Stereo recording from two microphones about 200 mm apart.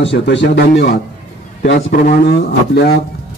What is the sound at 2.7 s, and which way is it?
Speech, 55° left (ahead or behind).